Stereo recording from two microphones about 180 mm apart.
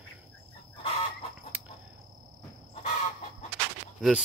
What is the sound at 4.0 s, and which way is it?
Speech, centre (ahead or behind).